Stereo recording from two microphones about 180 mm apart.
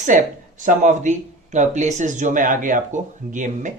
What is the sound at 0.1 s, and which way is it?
Speech, 45° right (ahead or behind).